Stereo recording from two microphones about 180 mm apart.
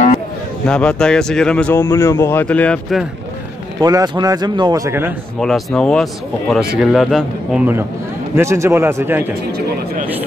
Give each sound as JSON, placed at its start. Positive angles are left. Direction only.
{"t": 0.7, "sound": "speech", "side_deg": 5}
{"t": 3.8, "sound": "speech", "side_deg": -20}
{"t": 5.4, "sound": "a man's voice", "side_deg": 0}